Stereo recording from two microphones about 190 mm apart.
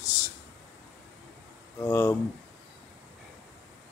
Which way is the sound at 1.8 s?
15° left (ahead or behind).